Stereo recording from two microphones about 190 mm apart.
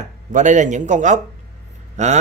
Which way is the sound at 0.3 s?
40° right (ahead or behind).